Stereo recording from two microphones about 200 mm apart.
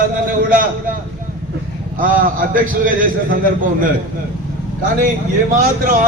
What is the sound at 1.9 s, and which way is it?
A man's voice, 45° right (ahead or behind).